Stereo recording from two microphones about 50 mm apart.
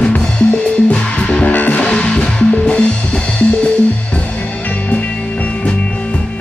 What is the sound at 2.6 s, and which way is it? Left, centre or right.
Drum kit, left.